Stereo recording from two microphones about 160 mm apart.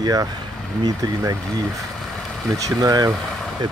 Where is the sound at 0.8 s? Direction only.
20° right (ahead or behind).